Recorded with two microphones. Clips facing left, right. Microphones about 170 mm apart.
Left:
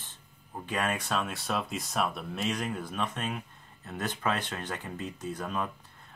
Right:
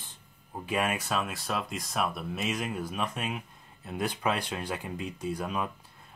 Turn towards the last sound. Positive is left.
turn(degrees=-10)  # may be behind; listen again after turning